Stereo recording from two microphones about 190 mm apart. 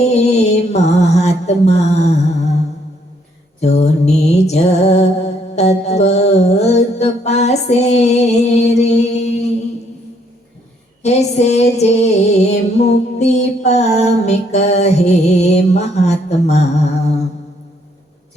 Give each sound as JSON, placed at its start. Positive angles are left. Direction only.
{"t": 0.0, "sound": "mantra", "side_deg": 35}
{"t": 3.6, "sound": "music", "side_deg": 35}
{"t": 11.0, "sound": "music", "side_deg": 35}